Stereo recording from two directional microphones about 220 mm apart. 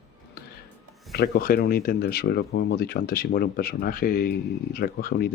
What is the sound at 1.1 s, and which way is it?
Speech, 45° left (ahead or behind).